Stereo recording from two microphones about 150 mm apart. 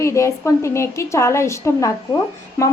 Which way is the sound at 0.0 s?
20° left (ahead or behind).